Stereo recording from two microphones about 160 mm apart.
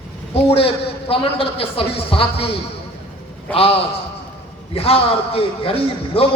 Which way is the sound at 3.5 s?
40° left (ahead or behind).